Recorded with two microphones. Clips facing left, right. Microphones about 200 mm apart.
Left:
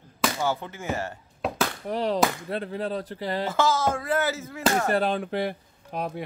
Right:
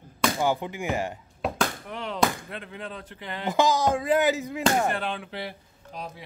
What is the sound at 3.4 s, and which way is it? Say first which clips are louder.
Speech: right 3 dB; 15° right (ahead or behind).